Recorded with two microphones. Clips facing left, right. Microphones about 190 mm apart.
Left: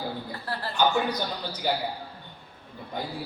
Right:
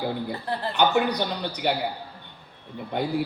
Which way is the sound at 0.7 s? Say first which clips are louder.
Right 3 dB; 65° right (ahead or behind).